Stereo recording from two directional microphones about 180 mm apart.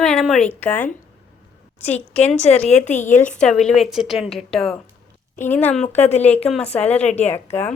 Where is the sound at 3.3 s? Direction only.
5° left (ahead or behind).